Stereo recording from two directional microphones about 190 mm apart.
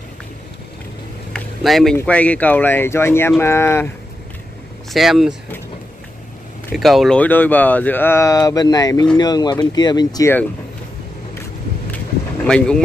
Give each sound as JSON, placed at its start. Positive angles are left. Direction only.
{"t": 1.3, "sound": "a sound", "side_deg": 0}
{"t": 2.0, "sound": "speech", "side_deg": 5}
{"t": 4.9, "sound": "speech", "side_deg": 0}
{"t": 6.7, "sound": "speech", "side_deg": 0}
{"t": 12.4, "sound": "speech", "side_deg": 5}